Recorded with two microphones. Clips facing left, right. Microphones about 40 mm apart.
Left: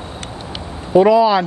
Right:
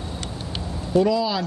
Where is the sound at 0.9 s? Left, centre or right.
Left.